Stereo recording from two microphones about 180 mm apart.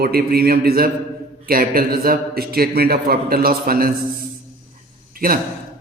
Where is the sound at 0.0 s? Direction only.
55° right (ahead or behind).